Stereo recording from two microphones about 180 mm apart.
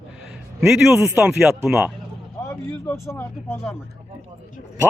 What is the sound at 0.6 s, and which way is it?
Speech, 15° right (ahead or behind).